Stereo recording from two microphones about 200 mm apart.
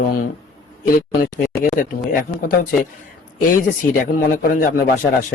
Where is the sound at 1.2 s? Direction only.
45° left (ahead or behind).